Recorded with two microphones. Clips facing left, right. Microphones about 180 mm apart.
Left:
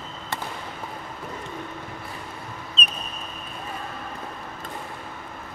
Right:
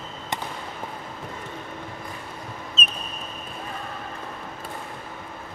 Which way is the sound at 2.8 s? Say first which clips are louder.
Left 1 dB; centre (ahead or behind).